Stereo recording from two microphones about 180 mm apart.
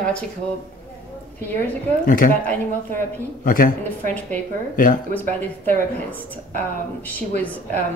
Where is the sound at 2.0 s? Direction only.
50° left (ahead or behind).